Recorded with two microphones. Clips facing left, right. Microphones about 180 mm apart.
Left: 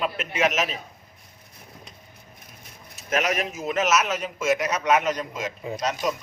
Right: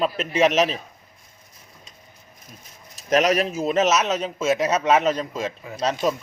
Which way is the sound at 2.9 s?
35° right (ahead or behind).